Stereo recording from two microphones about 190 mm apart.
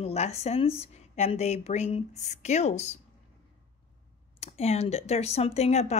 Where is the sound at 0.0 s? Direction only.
35° left (ahead or behind).